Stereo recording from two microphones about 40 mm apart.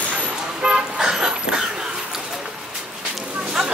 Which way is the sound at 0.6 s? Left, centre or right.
Right.